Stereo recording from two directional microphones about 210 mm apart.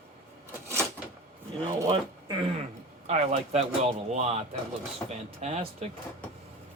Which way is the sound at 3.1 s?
30° right (ahead or behind).